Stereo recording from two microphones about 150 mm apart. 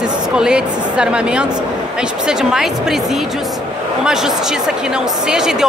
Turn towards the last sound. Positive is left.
turn(degrees=-5)  # may be behind; listen again after turning